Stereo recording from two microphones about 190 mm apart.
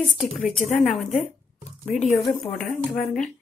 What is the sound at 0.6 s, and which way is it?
Speech, 40° left (ahead or behind).